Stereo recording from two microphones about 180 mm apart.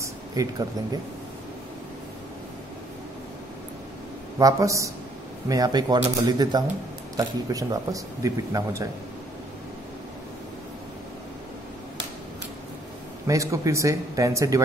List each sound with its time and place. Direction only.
0.0 s a sound: 20° right (ahead or behind)
4.4 s speech: 20° right (ahead or behind)
13.3 s speech: 15° right (ahead or behind)